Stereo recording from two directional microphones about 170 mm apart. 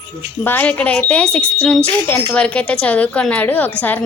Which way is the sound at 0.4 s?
10° left (ahead or behind).